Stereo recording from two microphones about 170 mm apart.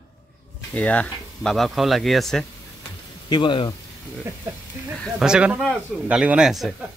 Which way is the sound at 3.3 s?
25° left (ahead or behind).